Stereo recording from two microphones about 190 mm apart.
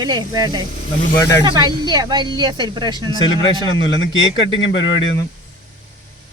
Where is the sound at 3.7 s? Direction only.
90° left.